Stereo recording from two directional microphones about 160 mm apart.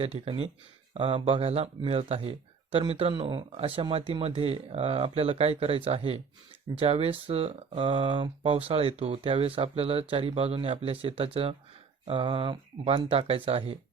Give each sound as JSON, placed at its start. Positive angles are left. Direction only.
{"t": 0.0, "sound": "speech", "side_deg": -35}